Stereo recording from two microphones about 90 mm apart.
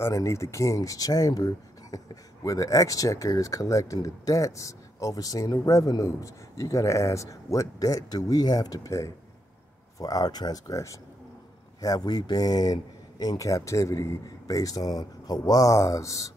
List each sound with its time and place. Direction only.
0.0 s speech: 35° left (ahead or behind)